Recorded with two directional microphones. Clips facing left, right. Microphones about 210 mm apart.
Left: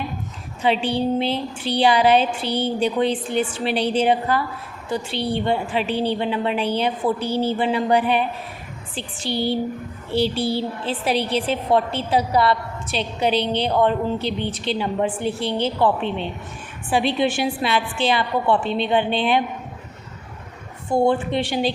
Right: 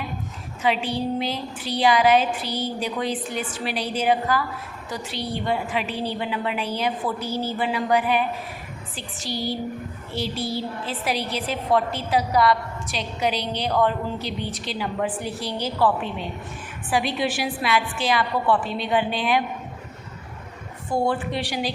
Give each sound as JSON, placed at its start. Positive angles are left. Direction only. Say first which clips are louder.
{"t": 0.6, "sound": "a woman's voice", "louder": "left 3 dB", "side_deg": 30}
{"t": 20.9, "sound": "a woman's voice", "louder": "left 5 dB", "side_deg": 25}